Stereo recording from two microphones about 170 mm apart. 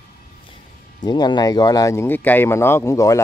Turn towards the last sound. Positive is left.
turn(degrees=20)  # may be behind; listen again after turning